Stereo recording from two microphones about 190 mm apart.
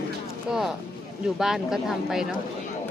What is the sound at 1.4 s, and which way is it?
Speech, centre (ahead or behind).